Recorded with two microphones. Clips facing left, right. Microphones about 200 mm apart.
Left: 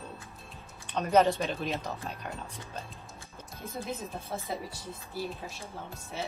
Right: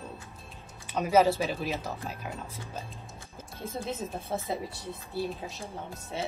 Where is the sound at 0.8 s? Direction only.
5° right (ahead or behind).